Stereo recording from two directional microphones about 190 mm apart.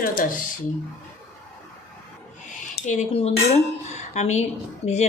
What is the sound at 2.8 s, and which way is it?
Speech, 40° left (ahead or behind).